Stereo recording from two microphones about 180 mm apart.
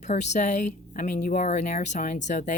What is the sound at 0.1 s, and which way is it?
Speech, 40° left (ahead or behind).